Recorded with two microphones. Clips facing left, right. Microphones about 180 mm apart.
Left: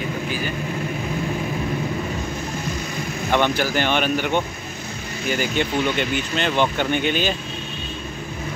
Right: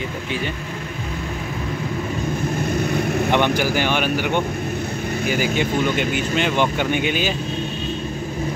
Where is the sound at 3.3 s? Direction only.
15° right (ahead or behind).